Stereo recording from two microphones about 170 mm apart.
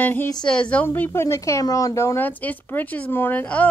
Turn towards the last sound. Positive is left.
turn(degrees=10)  # may be behind; listen again after turning